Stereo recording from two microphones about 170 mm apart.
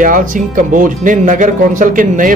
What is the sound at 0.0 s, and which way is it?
Music, 50° right (ahead or behind).